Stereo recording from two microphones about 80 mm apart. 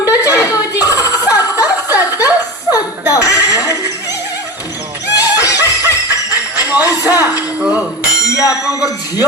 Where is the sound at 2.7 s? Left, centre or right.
Left.